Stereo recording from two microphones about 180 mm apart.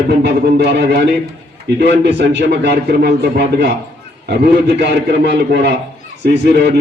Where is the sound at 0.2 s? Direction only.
70° right (ahead or behind).